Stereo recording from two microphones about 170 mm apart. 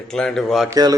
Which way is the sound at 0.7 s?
20° right (ahead or behind).